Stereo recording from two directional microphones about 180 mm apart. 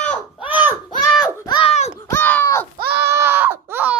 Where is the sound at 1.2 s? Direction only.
20° left (ahead or behind).